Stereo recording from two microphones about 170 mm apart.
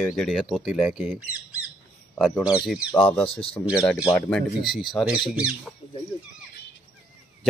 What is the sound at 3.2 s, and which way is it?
Speech, 35° left (ahead or behind).